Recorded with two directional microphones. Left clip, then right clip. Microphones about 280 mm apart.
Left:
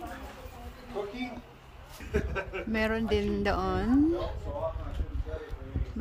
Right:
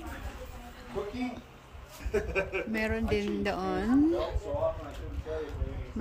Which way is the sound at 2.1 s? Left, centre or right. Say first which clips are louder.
Right 3 dB; right.